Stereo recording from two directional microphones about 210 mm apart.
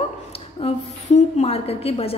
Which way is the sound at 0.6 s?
30° left (ahead or behind).